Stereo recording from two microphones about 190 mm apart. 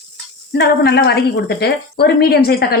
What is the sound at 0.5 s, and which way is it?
Speech, 60° left (ahead or behind).